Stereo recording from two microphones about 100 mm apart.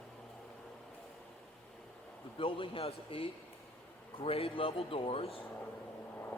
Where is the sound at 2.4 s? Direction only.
65° left (ahead or behind).